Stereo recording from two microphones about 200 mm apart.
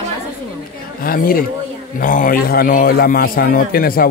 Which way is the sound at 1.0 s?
45° left (ahead or behind).